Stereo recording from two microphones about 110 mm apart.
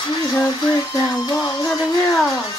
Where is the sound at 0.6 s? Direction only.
40° left (ahead or behind).